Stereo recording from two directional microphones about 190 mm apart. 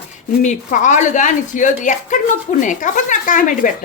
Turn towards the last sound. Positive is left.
turn(degrees=45)  # may be behind; listen again after turning